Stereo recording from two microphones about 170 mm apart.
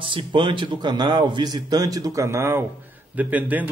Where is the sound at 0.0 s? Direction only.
30° right (ahead or behind).